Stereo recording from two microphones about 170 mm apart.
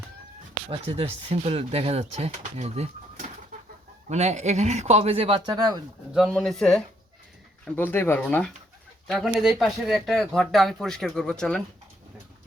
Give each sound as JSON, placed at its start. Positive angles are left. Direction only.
{"t": 0.7, "sound": "speech", "side_deg": -35}
{"t": 5.5, "sound": "speech", "side_deg": -20}
{"t": 6.1, "sound": "speech", "side_deg": 0}